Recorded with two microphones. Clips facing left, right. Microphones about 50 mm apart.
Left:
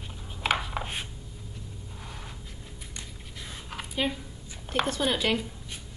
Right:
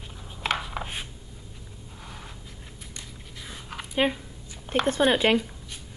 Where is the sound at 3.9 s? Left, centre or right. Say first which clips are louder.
Right 5 dB; right.